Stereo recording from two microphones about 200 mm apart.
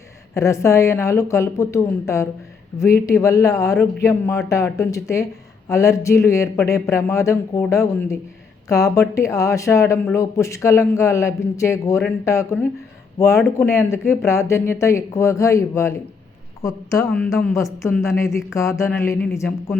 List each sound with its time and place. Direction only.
0.3 s speech: 15° left (ahead or behind)
17.1 s a woman's voice: 5° left (ahead or behind)
17.3 s speech: 15° left (ahead or behind)